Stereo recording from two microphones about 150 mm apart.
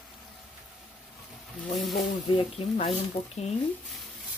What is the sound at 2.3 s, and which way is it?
Speech, 40° left (ahead or behind).